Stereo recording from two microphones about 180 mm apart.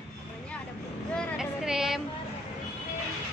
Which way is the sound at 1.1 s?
5° right (ahead or behind).